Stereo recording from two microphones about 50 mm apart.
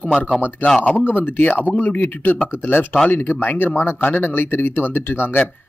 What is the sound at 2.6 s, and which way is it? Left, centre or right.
Speech, left.